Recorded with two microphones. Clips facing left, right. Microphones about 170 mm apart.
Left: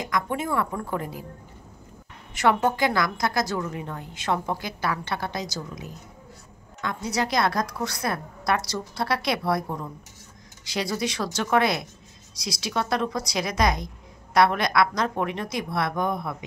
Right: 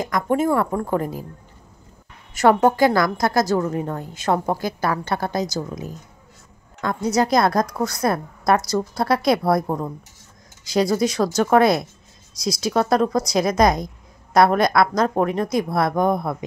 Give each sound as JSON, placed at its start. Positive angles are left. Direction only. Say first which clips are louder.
{"t": 0.0, "sound": "a woman's voice", "louder": "right 7 dB", "side_deg": -45}
{"t": 2.3, "sound": "a woman's voice", "louder": "right 6 dB", "side_deg": -45}